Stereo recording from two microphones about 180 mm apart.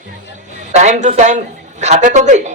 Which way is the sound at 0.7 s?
40° right (ahead or behind).